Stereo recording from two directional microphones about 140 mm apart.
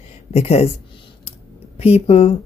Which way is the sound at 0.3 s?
50° left (ahead or behind).